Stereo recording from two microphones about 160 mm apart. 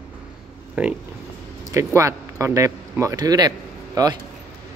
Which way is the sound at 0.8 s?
10° right (ahead or behind).